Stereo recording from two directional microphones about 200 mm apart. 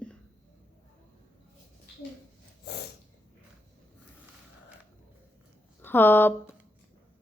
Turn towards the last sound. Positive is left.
turn(degrees=10)  # may be behind; listen again after turning